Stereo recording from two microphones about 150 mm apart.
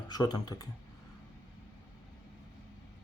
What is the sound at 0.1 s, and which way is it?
Speech, 25° left (ahead or behind).